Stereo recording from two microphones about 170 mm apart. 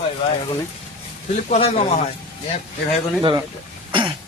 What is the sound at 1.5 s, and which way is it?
Speech, 35° left (ahead or behind).